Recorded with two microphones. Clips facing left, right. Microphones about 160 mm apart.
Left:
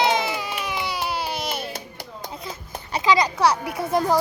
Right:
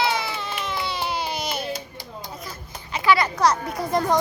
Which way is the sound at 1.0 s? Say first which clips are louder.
Even; 5° left (ahead or behind).